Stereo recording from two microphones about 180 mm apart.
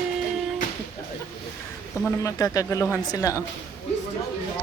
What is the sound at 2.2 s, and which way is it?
Speech, 20° left (ahead or behind).